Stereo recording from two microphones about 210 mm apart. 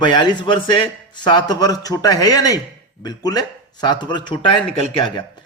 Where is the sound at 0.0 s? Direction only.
20° left (ahead or behind).